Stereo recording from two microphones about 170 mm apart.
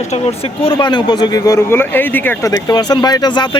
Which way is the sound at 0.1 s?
35° left (ahead or behind).